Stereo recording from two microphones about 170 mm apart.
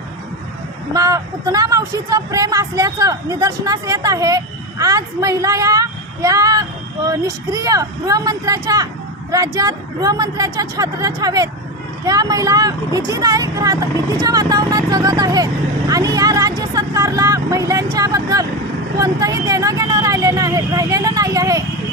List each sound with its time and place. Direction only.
0.9 s speech: 20° right (ahead or behind)